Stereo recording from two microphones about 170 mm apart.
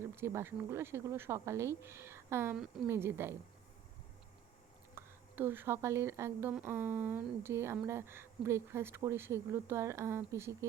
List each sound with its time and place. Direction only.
0.2 s a woman's voice: 15° right (ahead or behind)
4.9 s a woman's voice: 15° right (ahead or behind)